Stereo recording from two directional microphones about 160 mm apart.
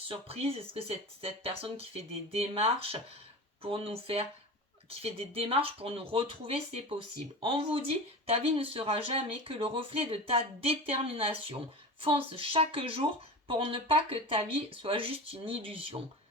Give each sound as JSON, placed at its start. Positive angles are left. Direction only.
{"t": 0.1, "sound": "speech", "side_deg": -35}